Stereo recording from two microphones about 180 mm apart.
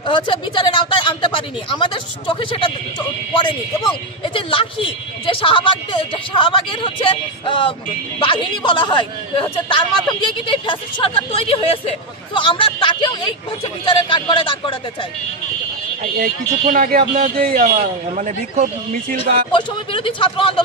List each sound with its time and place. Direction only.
0.0 s a woman's voice: 25° left (ahead or behind)
4.2 s a woman's voice: 30° left (ahead or behind)
16.2 s speech: 55° right (ahead or behind)
19.5 s a woman's voice: 30° left (ahead or behind)